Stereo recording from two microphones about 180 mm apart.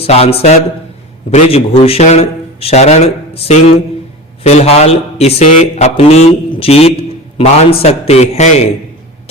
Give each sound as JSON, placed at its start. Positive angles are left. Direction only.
{"t": 0.0, "sound": "speech", "side_deg": 35}
{"t": 4.4, "sound": "speech", "side_deg": 35}